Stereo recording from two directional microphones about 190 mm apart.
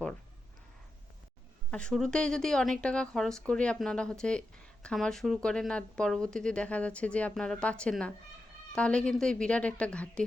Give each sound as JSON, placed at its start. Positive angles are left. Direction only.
{"t": 1.7, "sound": "speech", "side_deg": 5}